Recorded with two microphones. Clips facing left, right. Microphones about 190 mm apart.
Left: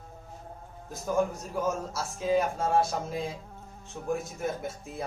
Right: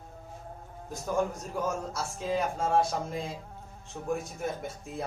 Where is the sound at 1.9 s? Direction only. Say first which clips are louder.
Left 4 dB; 5° left (ahead or behind).